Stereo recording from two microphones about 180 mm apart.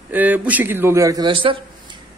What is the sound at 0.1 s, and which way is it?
A woman's voice, 10° right (ahead or behind).